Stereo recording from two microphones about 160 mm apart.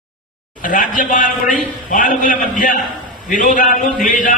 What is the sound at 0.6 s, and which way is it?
A man's voice, 55° left (ahead or behind).